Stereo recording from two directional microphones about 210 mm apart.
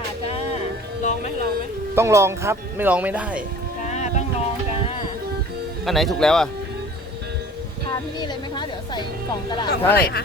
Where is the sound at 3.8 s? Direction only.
35° left (ahead or behind).